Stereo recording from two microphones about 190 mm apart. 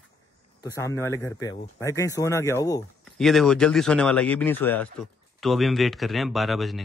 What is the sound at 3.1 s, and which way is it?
Speech, centre (ahead or behind).